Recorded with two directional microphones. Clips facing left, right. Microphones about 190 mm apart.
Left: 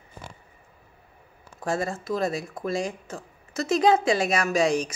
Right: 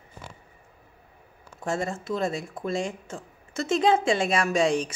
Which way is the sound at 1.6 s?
25° right (ahead or behind).